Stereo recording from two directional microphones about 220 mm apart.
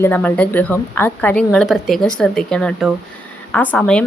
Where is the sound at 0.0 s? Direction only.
5° left (ahead or behind).